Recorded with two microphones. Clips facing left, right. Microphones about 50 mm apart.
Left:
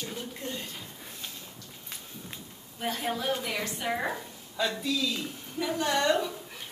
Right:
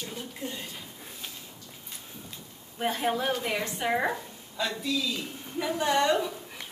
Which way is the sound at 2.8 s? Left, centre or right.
Right.